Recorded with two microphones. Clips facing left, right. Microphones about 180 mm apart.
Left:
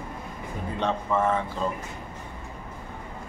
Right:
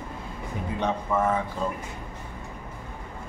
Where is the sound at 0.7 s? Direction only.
10° right (ahead or behind).